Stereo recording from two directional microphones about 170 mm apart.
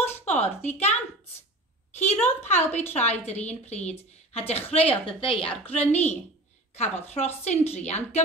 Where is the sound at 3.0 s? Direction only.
40° left (ahead or behind).